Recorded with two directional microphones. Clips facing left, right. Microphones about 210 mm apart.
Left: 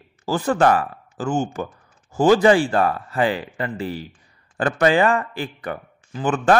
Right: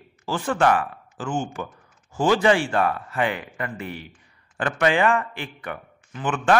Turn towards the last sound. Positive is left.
turn(degrees=35)  # may be behind; listen again after turning